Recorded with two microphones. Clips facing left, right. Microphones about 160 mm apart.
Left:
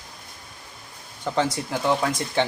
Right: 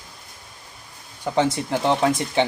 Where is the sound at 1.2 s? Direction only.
15° right (ahead or behind).